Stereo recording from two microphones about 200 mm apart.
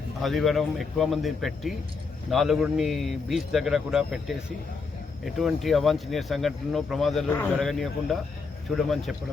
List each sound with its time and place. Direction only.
0.2 s speech: centre (ahead or behind)